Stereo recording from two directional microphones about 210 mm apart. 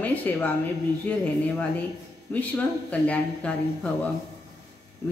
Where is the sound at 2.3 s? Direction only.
5° left (ahead or behind).